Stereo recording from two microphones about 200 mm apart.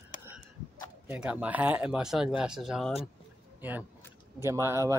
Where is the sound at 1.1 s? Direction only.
5° right (ahead or behind).